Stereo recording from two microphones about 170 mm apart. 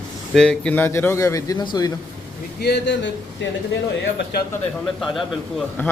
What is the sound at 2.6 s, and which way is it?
Speech, 80° left.